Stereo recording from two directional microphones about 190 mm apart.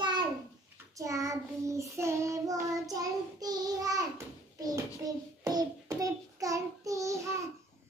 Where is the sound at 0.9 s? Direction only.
15° right (ahead or behind).